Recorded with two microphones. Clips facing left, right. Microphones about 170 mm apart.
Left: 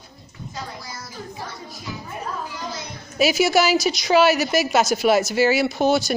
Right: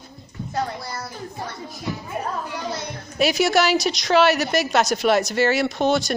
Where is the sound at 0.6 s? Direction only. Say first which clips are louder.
Right 8 dB; 65° right (ahead or behind).